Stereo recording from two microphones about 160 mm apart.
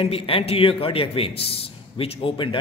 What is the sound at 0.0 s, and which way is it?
A man's voice, 35° left (ahead or behind).